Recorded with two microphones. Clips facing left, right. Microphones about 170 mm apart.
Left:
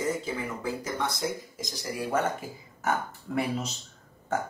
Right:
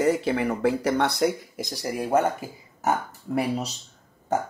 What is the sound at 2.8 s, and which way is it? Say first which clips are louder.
Speech: right 4 dB; 40° right (ahead or behind).